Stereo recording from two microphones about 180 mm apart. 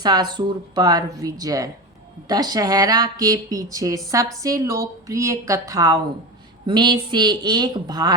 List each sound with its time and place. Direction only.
0.0 s a woman's voice: 25° right (ahead or behind)